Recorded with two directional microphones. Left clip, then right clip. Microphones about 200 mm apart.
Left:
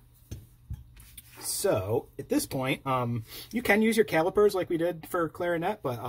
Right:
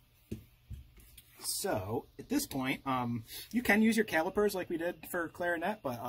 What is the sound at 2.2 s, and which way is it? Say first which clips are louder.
Speech: left 2 dB; 20° right (ahead or behind).